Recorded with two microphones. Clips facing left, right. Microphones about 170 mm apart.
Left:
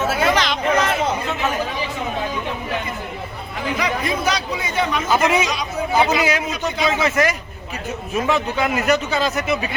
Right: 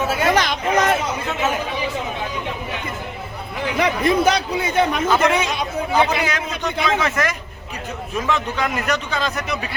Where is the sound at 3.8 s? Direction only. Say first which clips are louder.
Right 6 dB; 55° right (ahead or behind).